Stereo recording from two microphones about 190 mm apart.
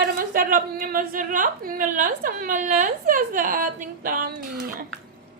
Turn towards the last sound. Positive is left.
turn(degrees=-50)  # may be behind; listen again after turning